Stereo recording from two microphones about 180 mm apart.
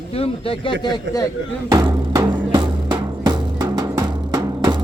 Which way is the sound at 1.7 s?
20° right (ahead or behind).